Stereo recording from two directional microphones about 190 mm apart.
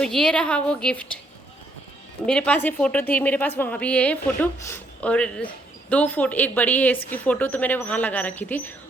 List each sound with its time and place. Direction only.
0.0 s a woman's voice: 5° left (ahead or behind)
2.2 s a woman's voice: 5° left (ahead or behind)